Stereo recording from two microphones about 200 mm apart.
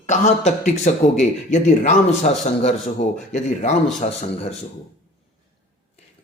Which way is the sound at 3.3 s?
35° left (ahead or behind).